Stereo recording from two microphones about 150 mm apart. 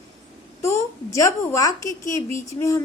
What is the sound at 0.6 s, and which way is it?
A woman's voice, 20° left (ahead or behind).